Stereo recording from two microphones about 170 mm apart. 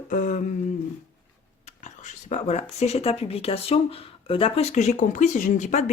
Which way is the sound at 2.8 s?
40° left (ahead or behind).